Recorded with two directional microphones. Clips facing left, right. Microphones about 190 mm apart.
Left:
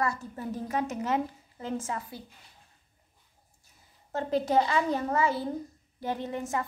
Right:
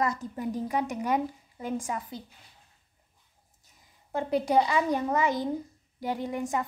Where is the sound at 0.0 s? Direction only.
20° right (ahead or behind).